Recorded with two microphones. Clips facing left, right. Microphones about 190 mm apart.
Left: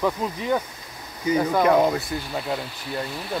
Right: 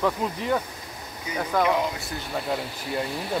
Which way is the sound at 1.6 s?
45° left (ahead or behind).